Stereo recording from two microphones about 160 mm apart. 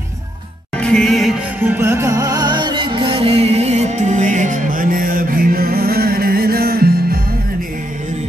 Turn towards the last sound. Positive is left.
turn(degrees=-70)  # may be behind; listen again after turning